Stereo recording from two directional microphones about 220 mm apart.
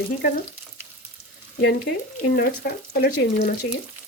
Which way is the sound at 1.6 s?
45° left (ahead or behind).